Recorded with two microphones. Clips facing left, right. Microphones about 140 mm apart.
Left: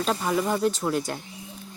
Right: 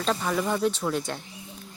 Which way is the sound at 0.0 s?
10° left (ahead or behind).